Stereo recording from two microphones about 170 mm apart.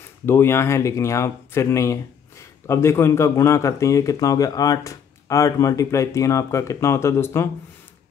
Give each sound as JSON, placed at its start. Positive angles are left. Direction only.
{"t": 0.3, "sound": "speech", "side_deg": 15}